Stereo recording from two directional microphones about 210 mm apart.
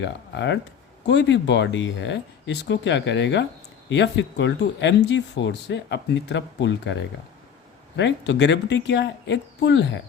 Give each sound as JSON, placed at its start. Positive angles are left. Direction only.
{"t": 0.0, "sound": "speech", "side_deg": 55}
{"t": 7.9, "sound": "speech", "side_deg": 60}